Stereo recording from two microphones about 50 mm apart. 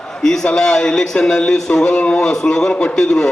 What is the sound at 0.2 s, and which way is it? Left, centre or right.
A man's voice, centre.